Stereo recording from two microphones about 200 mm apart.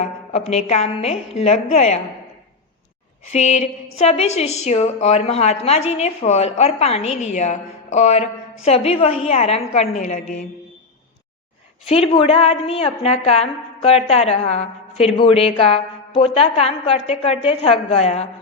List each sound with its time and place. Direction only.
0.3 s a woman's voice: 30° left (ahead or behind)
3.3 s a woman's voice: 35° left (ahead or behind)
11.9 s a woman's voice: 30° left (ahead or behind)